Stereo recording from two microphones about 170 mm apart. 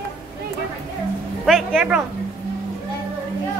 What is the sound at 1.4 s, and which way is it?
Speech, centre (ahead or behind).